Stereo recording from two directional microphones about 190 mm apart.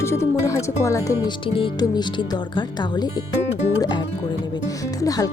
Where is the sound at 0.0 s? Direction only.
15° left (ahead or behind).